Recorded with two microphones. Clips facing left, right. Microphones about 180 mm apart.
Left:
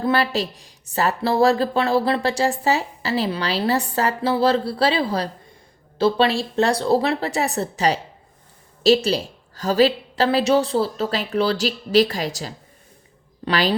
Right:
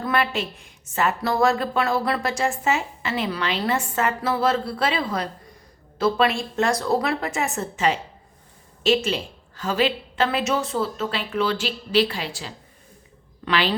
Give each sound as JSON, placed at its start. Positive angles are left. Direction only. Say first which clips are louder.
{"t": 0.0, "sound": "a woman's voice", "louder": "left 3 dB", "side_deg": 35}